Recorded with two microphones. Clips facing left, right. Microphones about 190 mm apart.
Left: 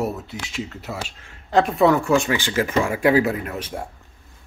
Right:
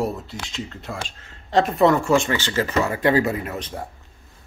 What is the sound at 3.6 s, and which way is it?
Speech, 10° left (ahead or behind).